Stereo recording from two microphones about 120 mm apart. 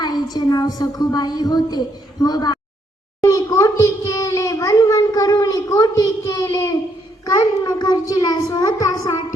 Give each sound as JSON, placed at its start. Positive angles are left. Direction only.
{"t": 0.0, "sound": "a child's voice", "side_deg": 35}
{"t": 3.2, "sound": "a sound", "side_deg": 25}
{"t": 7.3, "sound": "a child's voice", "side_deg": 30}